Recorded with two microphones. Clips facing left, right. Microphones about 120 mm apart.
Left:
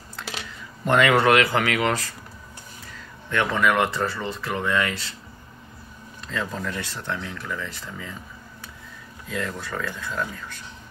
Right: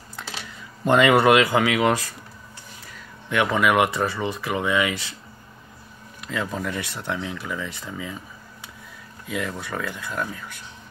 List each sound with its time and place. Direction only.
0.8 s speech: 20° right (ahead or behind)
3.3 s speech: 15° right (ahead or behind)
6.2 s speech: 10° right (ahead or behind)
9.3 s speech: 10° right (ahead or behind)